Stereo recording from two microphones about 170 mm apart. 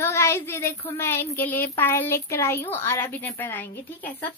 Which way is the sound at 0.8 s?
15° left (ahead or behind).